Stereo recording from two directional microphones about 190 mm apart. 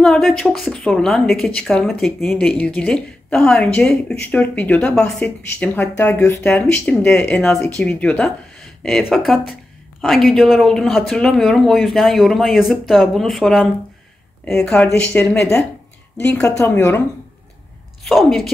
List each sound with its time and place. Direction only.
0.0 s speech: 5° left (ahead or behind)
18.0 s speech: centre (ahead or behind)